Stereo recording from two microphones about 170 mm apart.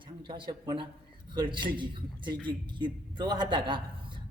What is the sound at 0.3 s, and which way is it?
A man's voice, 30° right (ahead or behind).